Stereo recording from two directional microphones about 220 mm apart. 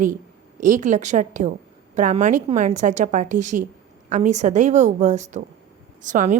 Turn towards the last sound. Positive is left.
turn(degrees=-35)  # may be behind; listen again after turning